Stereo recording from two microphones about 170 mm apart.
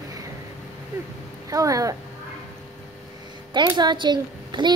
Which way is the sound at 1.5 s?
20° right (ahead or behind).